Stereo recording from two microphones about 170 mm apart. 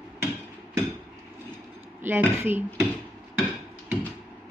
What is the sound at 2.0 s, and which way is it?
Speech, 10° right (ahead or behind).